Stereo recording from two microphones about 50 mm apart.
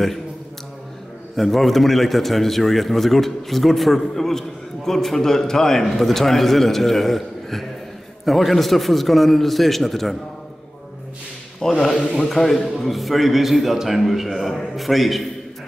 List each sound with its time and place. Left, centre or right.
1.3 s a man's voice: centre
11.8 s a man's voice: centre